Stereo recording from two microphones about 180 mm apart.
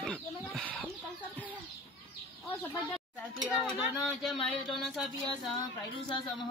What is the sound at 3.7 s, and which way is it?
Speech, centre (ahead or behind).